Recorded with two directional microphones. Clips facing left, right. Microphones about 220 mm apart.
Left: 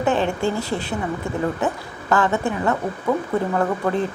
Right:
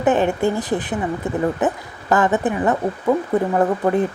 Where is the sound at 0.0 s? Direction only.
20° right (ahead or behind).